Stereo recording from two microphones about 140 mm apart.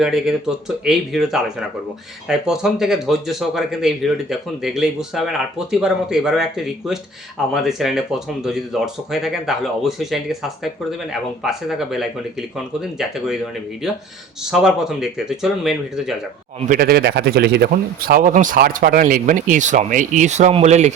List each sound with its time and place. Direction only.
0.0 s speech: centre (ahead or behind)
16.6 s a man's voice: 90° right; by 20.9 s 55° right (ahead or behind)